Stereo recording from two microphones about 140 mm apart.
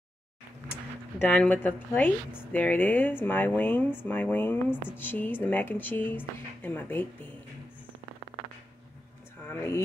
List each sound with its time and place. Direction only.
1.2 s a woman's voice: 10° left (ahead or behind)
9.5 s a woman's voice: 20° left (ahead or behind)